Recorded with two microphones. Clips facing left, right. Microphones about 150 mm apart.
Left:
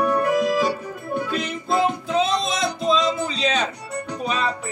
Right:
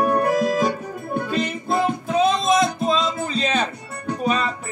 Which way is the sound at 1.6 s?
55° right (ahead or behind).